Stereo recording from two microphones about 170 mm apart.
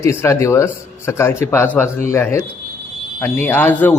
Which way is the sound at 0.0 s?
15° left (ahead or behind).